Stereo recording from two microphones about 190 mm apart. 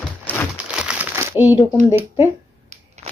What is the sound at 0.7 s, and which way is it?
Crumpling, 5° right (ahead or behind).